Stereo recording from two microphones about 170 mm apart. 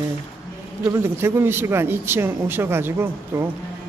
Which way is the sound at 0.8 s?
15° right (ahead or behind).